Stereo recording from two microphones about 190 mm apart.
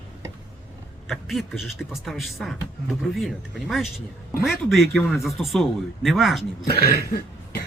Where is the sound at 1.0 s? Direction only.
Centre (ahead or behind).